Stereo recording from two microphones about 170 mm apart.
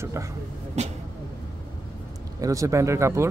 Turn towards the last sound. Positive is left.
turn(degrees=-15)  # may be behind; listen again after turning